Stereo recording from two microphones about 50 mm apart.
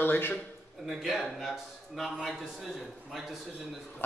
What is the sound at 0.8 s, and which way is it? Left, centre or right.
Speech, centre.